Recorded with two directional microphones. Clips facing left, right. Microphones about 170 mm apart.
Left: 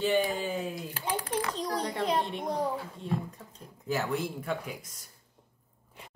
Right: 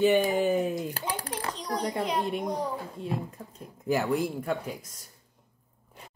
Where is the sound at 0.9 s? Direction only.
40° right (ahead or behind).